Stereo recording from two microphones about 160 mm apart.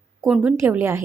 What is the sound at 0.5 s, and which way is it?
Speech, 15° right (ahead or behind).